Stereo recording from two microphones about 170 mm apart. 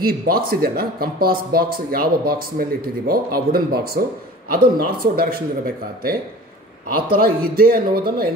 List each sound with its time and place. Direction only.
0.0 s speech: 60° right (ahead or behind)
7.1 s speech: 60° right (ahead or behind)